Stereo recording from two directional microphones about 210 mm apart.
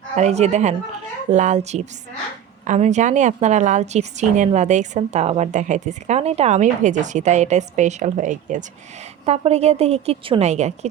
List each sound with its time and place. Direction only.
0.2 s a woman's voice: 30° right (ahead or behind)